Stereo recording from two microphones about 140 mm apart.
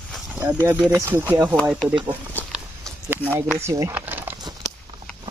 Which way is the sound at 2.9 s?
15° right (ahead or behind).